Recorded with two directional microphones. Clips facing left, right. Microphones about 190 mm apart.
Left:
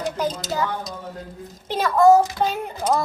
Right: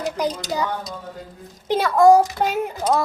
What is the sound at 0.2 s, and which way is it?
A child's voice, 15° right (ahead or behind).